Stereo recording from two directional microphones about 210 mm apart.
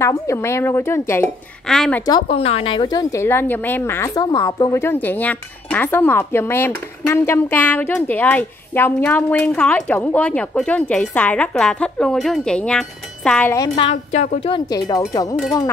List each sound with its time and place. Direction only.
0.0 s a woman's voice: 15° left (ahead or behind)
2.0 s a woman's voice: 25° left (ahead or behind); by 13.6 s 5° left (ahead or behind)
13.6 s a woman's voice: 25° left (ahead or behind)